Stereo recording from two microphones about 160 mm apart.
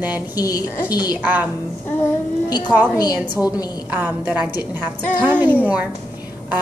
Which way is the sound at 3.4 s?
25° left (ahead or behind).